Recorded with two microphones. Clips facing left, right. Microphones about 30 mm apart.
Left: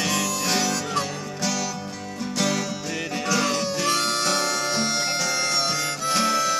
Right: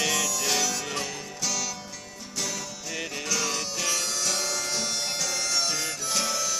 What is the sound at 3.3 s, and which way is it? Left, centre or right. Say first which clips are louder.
Music: left 7 dB; left.